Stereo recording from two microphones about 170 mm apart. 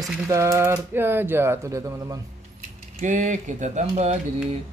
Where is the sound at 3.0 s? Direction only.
45° right (ahead or behind).